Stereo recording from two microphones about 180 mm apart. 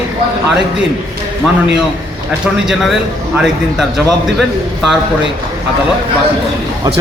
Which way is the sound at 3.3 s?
5° right (ahead or behind).